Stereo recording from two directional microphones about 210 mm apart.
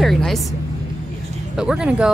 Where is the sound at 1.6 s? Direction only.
5° right (ahead or behind).